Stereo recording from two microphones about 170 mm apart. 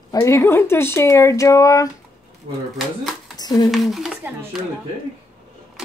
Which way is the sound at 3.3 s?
25° left (ahead or behind).